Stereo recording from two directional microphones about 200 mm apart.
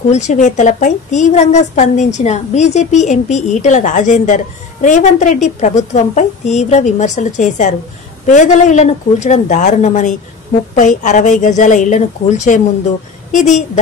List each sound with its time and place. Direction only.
0.1 s a woman's voice: 35° left (ahead or behind)